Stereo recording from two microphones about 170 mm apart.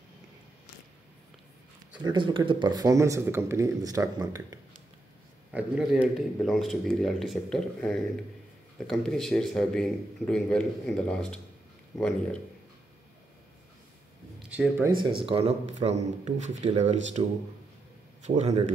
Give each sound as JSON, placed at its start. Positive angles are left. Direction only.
{"t": 2.0, "sound": "speech", "side_deg": -30}
{"t": 5.5, "sound": "speech", "side_deg": -5}
{"t": 14.5, "sound": "speech", "side_deg": -10}
{"t": 15.0, "sound": "speech", "side_deg": -30}
{"t": 18.2, "sound": "speech", "side_deg": -40}